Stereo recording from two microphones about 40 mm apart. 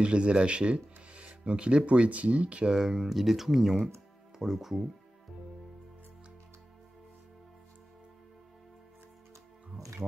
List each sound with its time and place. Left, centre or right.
0.0 s speech: right
2.7 s speech: centre